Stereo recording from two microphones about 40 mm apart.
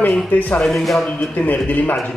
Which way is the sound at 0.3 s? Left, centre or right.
Left.